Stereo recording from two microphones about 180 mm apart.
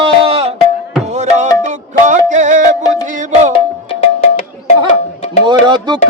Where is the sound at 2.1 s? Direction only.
45° right (ahead or behind).